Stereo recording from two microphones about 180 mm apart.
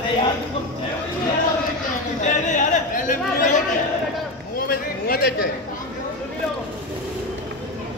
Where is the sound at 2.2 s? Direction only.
45° left (ahead or behind).